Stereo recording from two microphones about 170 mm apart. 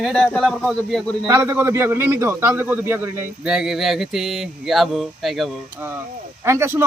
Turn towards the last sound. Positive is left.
turn(degrees=-15)  # may be behind; listen again after turning